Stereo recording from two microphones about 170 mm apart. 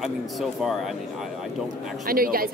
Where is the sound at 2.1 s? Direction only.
60° right (ahead or behind).